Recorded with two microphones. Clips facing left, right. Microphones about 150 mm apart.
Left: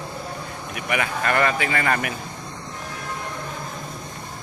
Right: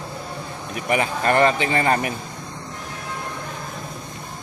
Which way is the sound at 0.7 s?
30° right (ahead or behind).